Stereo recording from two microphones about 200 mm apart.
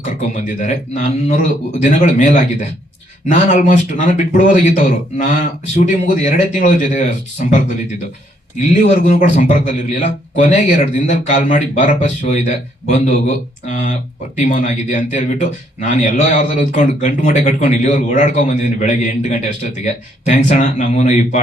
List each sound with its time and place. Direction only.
0.0 s a man's voice: 35° left (ahead or behind)